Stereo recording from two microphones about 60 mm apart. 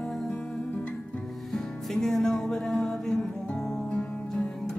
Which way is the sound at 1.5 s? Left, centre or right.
Centre.